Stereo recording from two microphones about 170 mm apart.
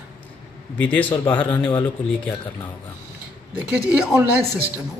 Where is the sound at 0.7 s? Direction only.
10° left (ahead or behind).